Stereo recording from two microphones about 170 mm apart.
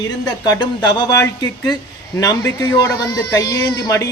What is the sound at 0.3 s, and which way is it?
Speech, 25° left (ahead or behind).